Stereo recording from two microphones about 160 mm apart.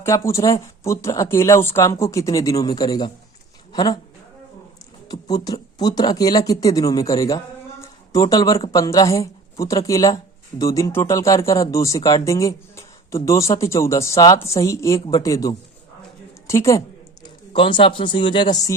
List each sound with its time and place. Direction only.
0.0 s speech: 15° left (ahead or behind)
5.0 s a woman's voice: 25° left (ahead or behind)
17.2 s speech: 30° left (ahead or behind)